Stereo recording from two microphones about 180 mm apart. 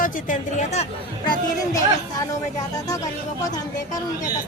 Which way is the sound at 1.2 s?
25° left (ahead or behind).